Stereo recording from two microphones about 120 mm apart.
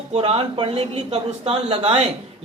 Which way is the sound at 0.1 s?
50° right (ahead or behind).